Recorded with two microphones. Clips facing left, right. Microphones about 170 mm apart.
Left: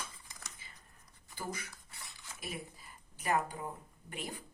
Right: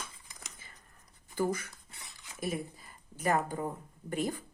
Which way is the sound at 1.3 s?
50° right (ahead or behind).